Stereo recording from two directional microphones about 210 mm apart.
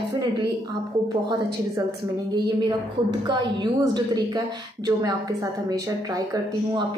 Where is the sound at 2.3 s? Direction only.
20° right (ahead or behind).